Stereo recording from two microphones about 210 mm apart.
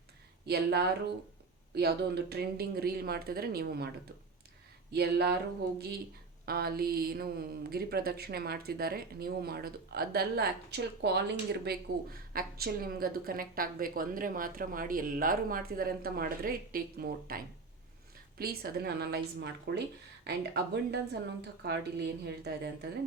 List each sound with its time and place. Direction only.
0.4 s a woman's voice: 50° right (ahead or behind)
4.9 s a woman's voice: 50° right (ahead or behind)
6.4 s a woman's voice: 45° right (ahead or behind)